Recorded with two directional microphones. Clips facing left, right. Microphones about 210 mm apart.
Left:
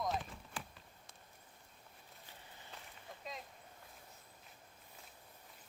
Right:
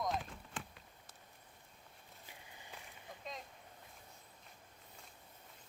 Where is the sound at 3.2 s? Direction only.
5° left (ahead or behind).